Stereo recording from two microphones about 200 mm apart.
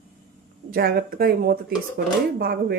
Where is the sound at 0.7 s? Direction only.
50° right (ahead or behind).